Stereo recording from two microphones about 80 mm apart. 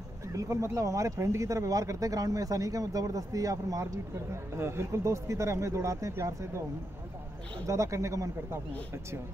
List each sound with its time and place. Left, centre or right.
0.3 s speech: right
7.6 s speech: right